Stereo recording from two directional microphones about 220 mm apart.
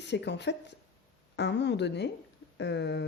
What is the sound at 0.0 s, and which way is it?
Speech, 50° left (ahead or behind).